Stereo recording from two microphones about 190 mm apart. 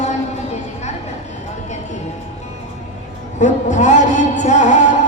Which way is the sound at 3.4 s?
40° left (ahead or behind).